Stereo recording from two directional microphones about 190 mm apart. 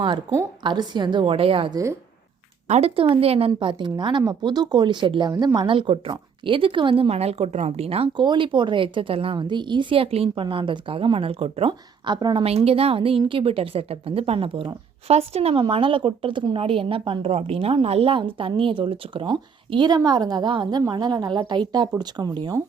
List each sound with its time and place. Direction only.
0.6 s a woman's voice: 25° right (ahead or behind)